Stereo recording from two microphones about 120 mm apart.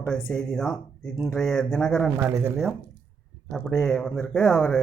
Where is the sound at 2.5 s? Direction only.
Centre (ahead or behind).